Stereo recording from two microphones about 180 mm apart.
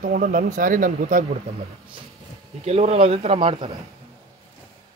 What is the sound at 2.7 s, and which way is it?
Speech, 35° right (ahead or behind).